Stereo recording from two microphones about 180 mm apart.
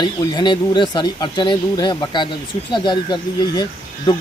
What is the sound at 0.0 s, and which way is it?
Speech, 25° left (ahead or behind).